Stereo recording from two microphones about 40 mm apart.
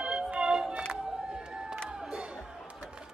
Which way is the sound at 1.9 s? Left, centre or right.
Centre.